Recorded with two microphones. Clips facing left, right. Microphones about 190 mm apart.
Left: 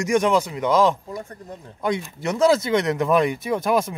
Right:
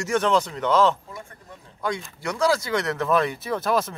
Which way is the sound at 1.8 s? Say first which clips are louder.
Left 4 dB; 20° left (ahead or behind).